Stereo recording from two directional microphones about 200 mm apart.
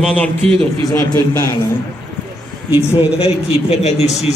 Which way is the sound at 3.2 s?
30° left (ahead or behind).